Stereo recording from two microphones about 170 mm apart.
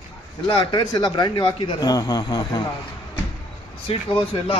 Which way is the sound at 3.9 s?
35° left (ahead or behind).